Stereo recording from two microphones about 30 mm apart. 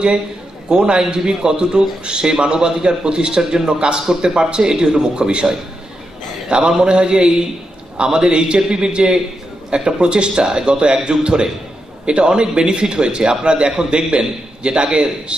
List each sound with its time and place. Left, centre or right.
0.7 s a man's voice: right
6.5 s a man's voice: right